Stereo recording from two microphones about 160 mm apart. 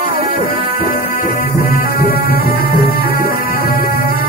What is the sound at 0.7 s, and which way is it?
Music, 60° left (ahead or behind).